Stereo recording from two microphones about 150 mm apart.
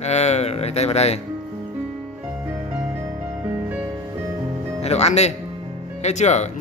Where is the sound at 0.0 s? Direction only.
45° left (ahead or behind).